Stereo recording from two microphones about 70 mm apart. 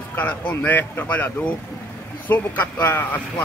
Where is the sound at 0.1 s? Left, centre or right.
Left.